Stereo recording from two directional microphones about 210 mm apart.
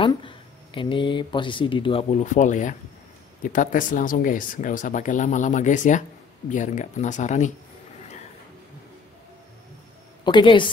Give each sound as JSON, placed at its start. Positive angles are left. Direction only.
{"t": 0.0, "sound": "speech", "side_deg": 25}
{"t": 10.2, "sound": "speech", "side_deg": 20}